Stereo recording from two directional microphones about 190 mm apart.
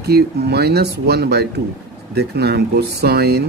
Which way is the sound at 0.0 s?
60° right (ahead or behind).